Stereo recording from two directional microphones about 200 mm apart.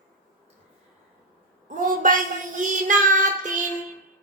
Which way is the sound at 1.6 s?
40° right (ahead or behind).